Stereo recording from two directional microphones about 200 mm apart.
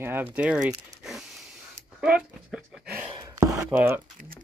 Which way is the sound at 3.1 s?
15° right (ahead or behind).